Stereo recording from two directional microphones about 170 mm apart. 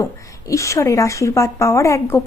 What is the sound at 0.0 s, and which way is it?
Speech, 20° left (ahead or behind).